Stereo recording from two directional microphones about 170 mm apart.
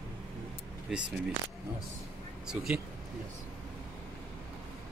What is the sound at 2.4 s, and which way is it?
Speech, 5° right (ahead or behind).